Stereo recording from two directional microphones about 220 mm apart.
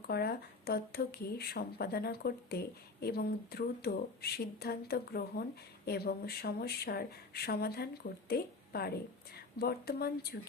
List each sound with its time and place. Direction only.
0.1 s a woman's voice: 45° left (ahead or behind)